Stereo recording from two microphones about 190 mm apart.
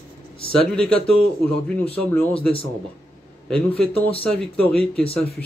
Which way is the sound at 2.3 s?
30° left (ahead or behind).